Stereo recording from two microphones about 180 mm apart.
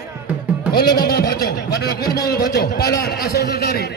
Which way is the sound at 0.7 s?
60° left (ahead or behind).